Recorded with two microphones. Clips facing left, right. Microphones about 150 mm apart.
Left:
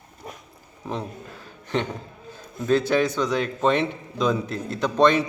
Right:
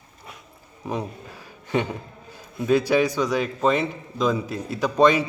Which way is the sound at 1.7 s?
10° right (ahead or behind).